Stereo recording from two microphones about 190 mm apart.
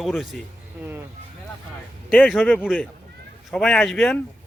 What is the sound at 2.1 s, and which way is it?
Speech, 5° left (ahead or behind).